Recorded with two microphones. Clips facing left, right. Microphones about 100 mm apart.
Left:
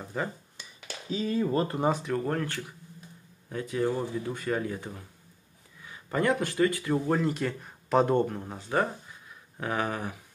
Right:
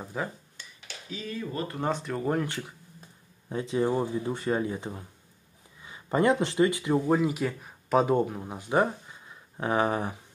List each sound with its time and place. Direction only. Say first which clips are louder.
0.0 s speech: even; 5° right (ahead or behind)
0.8 s speech: left 7 dB; 30° left (ahead or behind)
1.8 s speech: left 3 dB; 5° left (ahead or behind)
2.2 s speech: right 2 dB; 15° right (ahead or behind)